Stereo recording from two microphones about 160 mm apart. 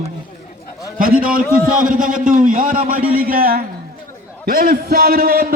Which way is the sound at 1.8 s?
55° right (ahead or behind).